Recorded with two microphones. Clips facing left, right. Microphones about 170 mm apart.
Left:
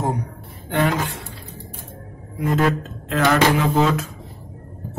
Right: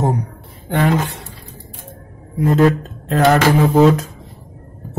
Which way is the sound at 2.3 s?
35° right (ahead or behind).